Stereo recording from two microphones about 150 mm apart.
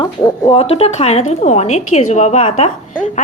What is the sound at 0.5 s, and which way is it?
A woman's voice, 40° left (ahead or behind).